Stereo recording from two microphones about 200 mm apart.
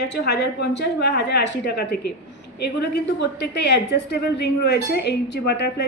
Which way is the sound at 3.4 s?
55° left (ahead or behind).